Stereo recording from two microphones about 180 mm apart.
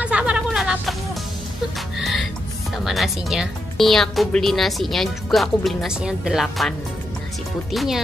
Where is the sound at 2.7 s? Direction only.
Centre (ahead or behind).